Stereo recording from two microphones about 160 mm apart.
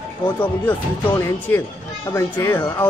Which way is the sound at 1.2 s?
15° left (ahead or behind).